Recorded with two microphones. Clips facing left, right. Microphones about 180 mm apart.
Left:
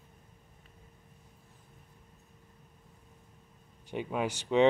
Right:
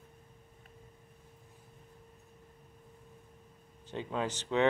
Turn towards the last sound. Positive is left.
turn(degrees=15)  # may be behind; listen again after turning